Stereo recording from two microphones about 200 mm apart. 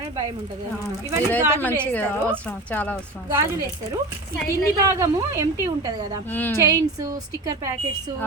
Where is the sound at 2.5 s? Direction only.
10° left (ahead or behind).